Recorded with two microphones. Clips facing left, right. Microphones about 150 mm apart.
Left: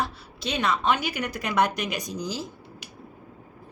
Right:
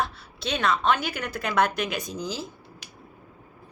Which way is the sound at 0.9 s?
50° right (ahead or behind).